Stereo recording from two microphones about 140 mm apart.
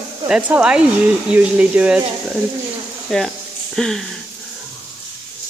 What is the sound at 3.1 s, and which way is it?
Speech, 5° left (ahead or behind).